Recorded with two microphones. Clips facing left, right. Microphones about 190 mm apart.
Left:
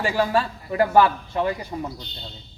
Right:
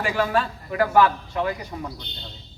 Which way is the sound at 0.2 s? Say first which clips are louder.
Left 1 dB; 30° left (ahead or behind).